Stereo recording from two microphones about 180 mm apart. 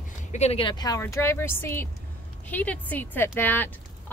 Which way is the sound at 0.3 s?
35° left (ahead or behind).